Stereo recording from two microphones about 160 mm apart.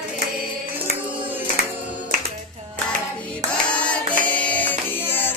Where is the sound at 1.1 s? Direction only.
10° right (ahead or behind).